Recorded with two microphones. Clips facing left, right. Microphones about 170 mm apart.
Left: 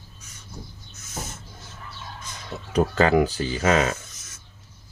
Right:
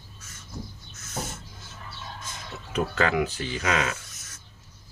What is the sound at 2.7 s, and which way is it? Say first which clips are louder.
Speech: left 6 dB; 35° left (ahead or behind).